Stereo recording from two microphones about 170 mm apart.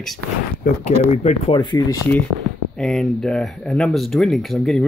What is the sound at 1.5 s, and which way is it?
Speech, 25° left (ahead or behind).